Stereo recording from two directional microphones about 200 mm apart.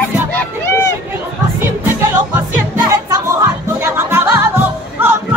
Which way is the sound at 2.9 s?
15° right (ahead or behind).